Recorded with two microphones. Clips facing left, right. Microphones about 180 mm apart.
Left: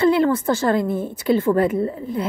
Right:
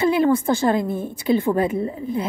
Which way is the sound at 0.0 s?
15° right (ahead or behind).